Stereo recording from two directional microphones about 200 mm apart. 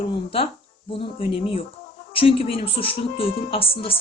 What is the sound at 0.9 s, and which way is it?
Speech, 25° left (ahead or behind).